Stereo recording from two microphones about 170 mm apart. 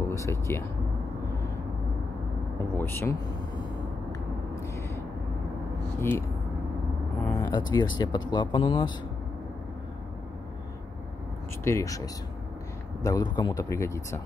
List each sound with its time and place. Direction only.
0.1 s speech: 15° left (ahead or behind)
2.7 s speech: 15° left (ahead or behind)
5.9 s speech: 15° left (ahead or behind)
7.3 s speech: 25° left (ahead or behind)
11.6 s speech: 15° left (ahead or behind)
13.0 s speech: 25° left (ahead or behind)